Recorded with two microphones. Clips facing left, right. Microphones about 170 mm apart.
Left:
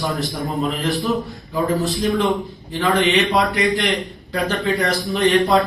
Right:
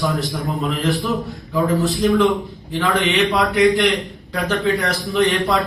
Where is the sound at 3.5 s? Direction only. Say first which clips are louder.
Right 5 dB; centre (ahead or behind).